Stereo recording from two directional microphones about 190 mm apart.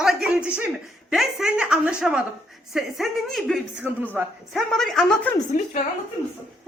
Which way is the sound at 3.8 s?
10° right (ahead or behind).